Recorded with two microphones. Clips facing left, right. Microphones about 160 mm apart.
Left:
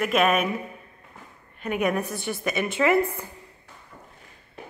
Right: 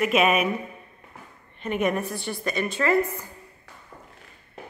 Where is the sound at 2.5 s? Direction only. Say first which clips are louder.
Left 2 dB; 15° left (ahead or behind).